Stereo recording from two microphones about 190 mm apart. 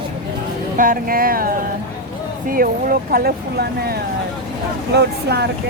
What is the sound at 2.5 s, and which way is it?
Speech, 50° right (ahead or behind).